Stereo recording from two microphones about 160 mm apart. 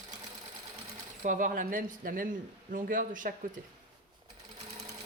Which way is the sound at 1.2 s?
55° right (ahead or behind).